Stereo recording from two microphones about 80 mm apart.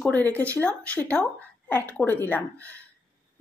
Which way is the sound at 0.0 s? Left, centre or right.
Centre.